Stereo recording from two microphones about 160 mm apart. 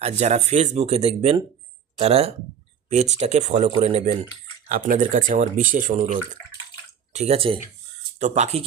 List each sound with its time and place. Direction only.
0.0 s speech: 45° right (ahead or behind)
4.7 s speech: 55° right (ahead or behind); by 7.6 s 35° right (ahead or behind)
8.2 s speech: 50° right (ahead or behind)